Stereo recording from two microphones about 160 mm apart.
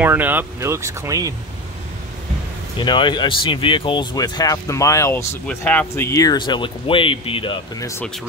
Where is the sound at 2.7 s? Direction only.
30° left (ahead or behind).